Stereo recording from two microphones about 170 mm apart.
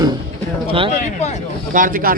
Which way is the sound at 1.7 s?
55° right (ahead or behind).